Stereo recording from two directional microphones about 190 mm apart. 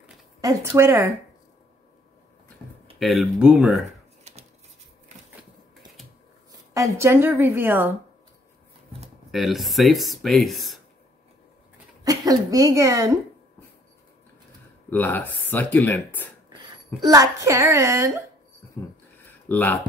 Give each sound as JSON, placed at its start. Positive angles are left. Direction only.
{"t": 0.4, "sound": "a woman's voice", "side_deg": -15}
{"t": 3.0, "sound": "speech", "side_deg": 0}
{"t": 6.7, "sound": "a woman's voice", "side_deg": -15}
{"t": 9.3, "sound": "speech", "side_deg": 0}
{"t": 12.0, "sound": "speech", "side_deg": -20}
{"t": 14.9, "sound": "speech", "side_deg": 10}
{"t": 16.4, "sound": "speech", "side_deg": -20}
{"t": 19.1, "sound": "a sound", "side_deg": 10}